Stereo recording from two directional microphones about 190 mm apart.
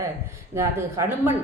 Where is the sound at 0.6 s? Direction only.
15° right (ahead or behind).